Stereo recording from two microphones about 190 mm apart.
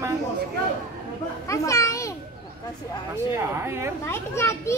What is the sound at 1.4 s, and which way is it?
Speech, 15° left (ahead or behind).